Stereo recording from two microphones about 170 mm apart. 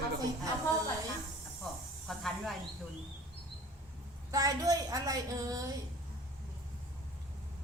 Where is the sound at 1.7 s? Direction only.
Centre (ahead or behind).